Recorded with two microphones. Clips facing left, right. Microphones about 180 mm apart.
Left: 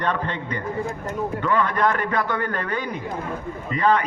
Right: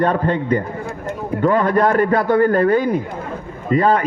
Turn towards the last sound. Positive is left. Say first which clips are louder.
# right 5 dB
turn(degrees=-45)  # may be behind; listen again after turning